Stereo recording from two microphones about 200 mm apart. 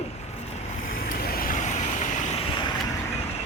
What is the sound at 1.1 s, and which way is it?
Vehicle, 45° left (ahead or behind).